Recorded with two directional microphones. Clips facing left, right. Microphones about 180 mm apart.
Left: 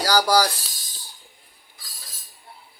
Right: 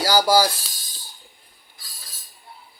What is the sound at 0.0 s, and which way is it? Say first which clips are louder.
Speech: right 1 dB; 5° right (ahead or behind).